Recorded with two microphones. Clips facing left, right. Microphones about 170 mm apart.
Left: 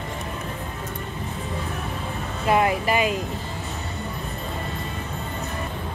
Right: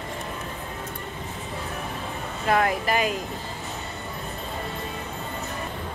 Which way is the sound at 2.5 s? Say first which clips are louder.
Left 2 dB; 10° left (ahead or behind).